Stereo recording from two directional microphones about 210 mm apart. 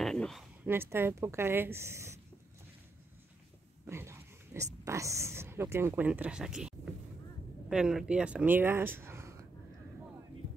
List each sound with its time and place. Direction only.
0.0 s a sound: centre (ahead or behind)
0.7 s speech: 10° right (ahead or behind)
3.8 s pig: 10° right (ahead or behind)
4.8 s speech: 15° right (ahead or behind)
7.7 s speech: 5° right (ahead or behind)